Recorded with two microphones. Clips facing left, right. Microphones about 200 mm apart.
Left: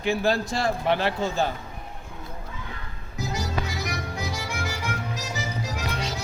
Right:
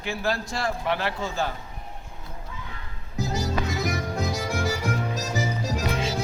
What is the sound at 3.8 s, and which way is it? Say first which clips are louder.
Music: right 4 dB; 50° right (ahead or behind).